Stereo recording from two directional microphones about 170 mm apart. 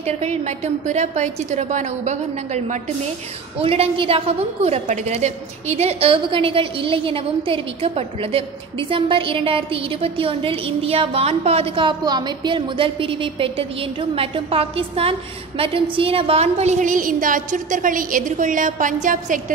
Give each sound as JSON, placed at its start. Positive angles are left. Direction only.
{"t": 0.0, "sound": "a woman's voice", "side_deg": -40}